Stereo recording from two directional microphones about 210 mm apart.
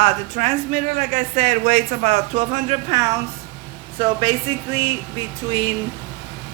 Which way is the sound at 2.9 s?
15° right (ahead or behind).